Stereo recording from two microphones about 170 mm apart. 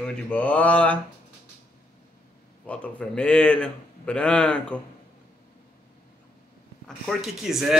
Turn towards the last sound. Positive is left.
turn(degrees=0)  # may be behind; listen again after turning